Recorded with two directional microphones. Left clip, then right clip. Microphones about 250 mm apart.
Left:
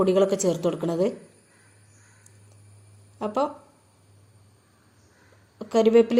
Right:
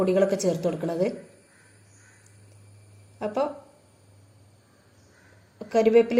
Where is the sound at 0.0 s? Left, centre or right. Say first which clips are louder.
Left 1 dB; left.